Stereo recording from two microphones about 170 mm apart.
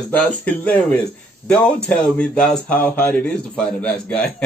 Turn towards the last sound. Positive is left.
turn(degrees=5)  # may be behind; listen again after turning